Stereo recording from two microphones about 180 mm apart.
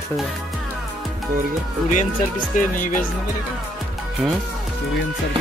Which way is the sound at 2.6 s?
45° left (ahead or behind).